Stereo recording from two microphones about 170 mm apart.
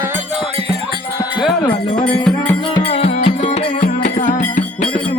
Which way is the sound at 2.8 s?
35° left (ahead or behind).